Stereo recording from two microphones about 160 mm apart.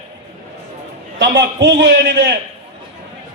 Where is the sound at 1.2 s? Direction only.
90° right.